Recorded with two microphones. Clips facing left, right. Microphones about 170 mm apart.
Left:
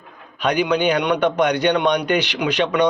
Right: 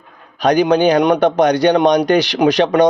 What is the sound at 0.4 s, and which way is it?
A man's voice, 40° right (ahead or behind).